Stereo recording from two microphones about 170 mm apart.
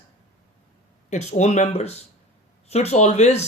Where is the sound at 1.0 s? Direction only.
40° left (ahead or behind).